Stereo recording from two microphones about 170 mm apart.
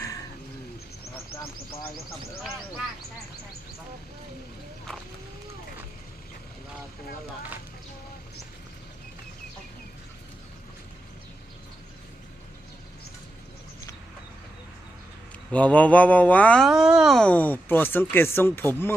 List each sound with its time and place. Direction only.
1.1 s a sound: 35° left (ahead or behind)
15.5 s speech: 10° left (ahead or behind)
16.6 s speech: 5° right (ahead or behind); by 18.9 s 10° left (ahead or behind)